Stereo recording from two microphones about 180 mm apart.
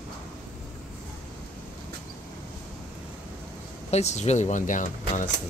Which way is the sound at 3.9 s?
40° left (ahead or behind).